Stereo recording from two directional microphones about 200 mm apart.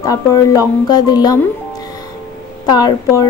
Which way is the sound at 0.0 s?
15° left (ahead or behind).